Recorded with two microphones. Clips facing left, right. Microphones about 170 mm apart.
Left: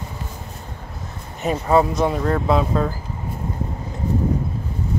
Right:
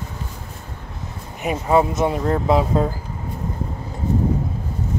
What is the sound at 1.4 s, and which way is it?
Speech, 15° right (ahead or behind).